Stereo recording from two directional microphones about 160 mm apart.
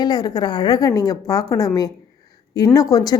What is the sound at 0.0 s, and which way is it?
A woman's voice, 25° left (ahead or behind).